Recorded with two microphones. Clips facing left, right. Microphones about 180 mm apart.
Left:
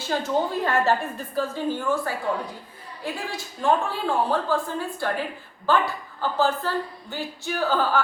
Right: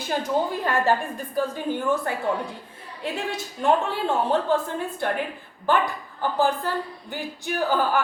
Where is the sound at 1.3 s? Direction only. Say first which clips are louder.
Even; 15° right (ahead or behind).